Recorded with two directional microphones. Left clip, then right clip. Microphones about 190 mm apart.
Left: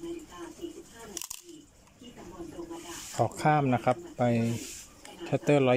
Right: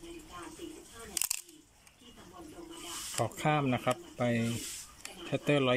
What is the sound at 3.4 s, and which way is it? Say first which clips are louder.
Speech: left 5 dB; centre (ahead or behind).